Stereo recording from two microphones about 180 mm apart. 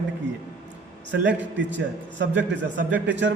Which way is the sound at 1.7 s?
85° right.